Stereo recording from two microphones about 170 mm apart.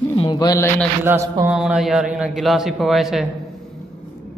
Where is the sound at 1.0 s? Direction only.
15° right (ahead or behind).